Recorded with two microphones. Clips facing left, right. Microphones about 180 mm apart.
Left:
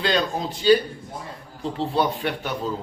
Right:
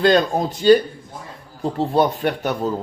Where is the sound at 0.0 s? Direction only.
50° right (ahead or behind).